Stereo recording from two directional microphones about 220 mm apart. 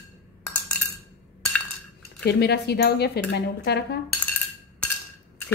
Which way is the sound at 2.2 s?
50° left (ahead or behind).